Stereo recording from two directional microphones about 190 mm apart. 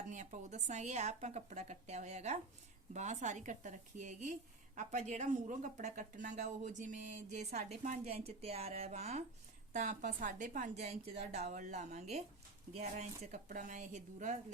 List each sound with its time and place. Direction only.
0.1 s a woman's voice: 40° right (ahead or behind)